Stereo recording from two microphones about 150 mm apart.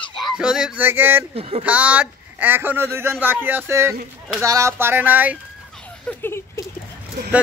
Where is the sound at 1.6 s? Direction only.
10° right (ahead or behind).